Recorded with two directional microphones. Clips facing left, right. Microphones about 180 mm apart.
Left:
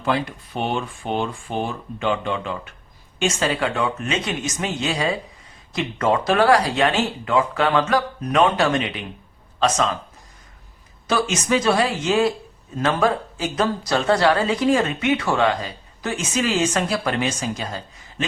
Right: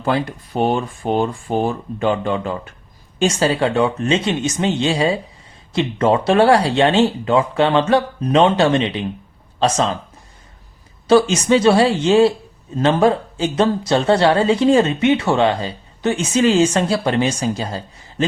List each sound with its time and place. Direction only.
0.0 s speech: 40° right (ahead or behind)
11.1 s speech: 30° right (ahead or behind)